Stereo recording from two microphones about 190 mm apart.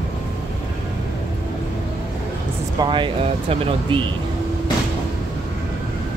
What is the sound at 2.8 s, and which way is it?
Speech, 25° right (ahead or behind).